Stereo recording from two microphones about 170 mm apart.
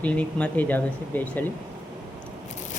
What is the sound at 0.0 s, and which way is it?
Speech, 5° left (ahead or behind).